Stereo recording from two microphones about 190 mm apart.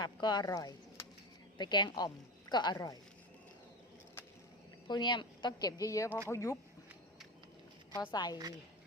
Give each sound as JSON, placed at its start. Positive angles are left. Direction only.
{"t": 0.0, "sound": "a woman's voice", "side_deg": 20}
{"t": 4.9, "sound": "a woman's voice", "side_deg": 25}
{"t": 7.9, "sound": "a woman's voice", "side_deg": 20}